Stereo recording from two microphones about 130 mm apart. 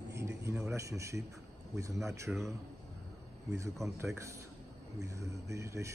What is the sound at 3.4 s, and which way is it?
Speech, 25° right (ahead or behind).